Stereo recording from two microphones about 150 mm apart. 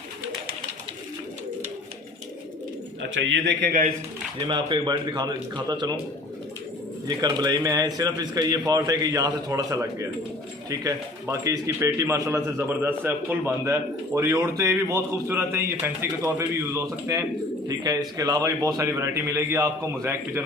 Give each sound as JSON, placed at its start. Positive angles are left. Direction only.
{"t": 3.6, "sound": "speech", "side_deg": -80}
{"t": 4.4, "sound": "a man's voice", "side_deg": -30}
{"t": 7.2, "sound": "a man's voice", "side_deg": -25}